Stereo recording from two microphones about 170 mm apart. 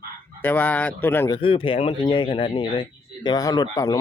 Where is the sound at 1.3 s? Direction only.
30° left (ahead or behind).